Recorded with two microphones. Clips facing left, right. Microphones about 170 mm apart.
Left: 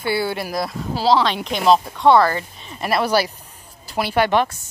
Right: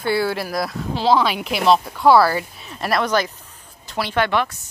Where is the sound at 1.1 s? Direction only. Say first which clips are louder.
Even; 10° right (ahead or behind); by 4.3 s 10° left (ahead or behind).